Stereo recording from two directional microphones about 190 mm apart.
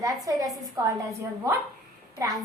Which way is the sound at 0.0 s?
20° right (ahead or behind).